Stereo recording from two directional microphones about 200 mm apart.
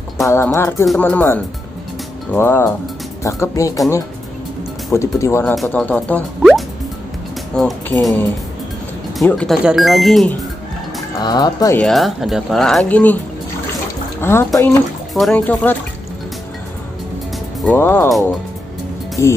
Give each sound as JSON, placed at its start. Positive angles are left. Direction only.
{"t": 0.3, "sound": "speech", "side_deg": 15}
{"t": 4.9, "sound": "speech", "side_deg": 15}
{"t": 5.5, "sound": "speech", "side_deg": 5}
{"t": 9.2, "sound": "speech", "side_deg": 5}
{"t": 11.2, "sound": "speech", "side_deg": 20}
{"t": 11.8, "sound": "speech", "side_deg": 0}
{"t": 14.2, "sound": "speech", "side_deg": 10}
{"t": 17.6, "sound": "speech", "side_deg": 10}
{"t": 19.2, "sound": "speech", "side_deg": 15}